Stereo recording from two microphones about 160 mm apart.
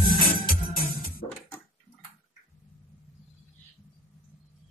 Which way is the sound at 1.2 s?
40° left (ahead or behind).